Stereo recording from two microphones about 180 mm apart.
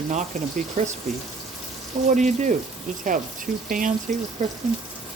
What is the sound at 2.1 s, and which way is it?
Speech, 45° right (ahead or behind).